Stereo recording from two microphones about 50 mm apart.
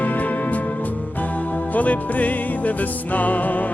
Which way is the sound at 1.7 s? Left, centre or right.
Left.